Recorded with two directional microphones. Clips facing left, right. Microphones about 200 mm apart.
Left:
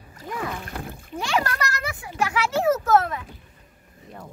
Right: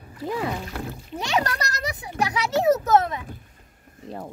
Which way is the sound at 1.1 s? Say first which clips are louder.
Even; 20° right (ahead or behind).